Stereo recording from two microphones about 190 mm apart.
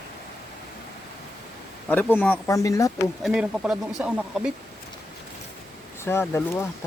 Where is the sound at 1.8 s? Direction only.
10° left (ahead or behind).